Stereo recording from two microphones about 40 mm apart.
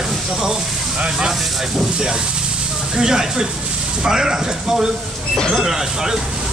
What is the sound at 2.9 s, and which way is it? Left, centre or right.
Speech, centre.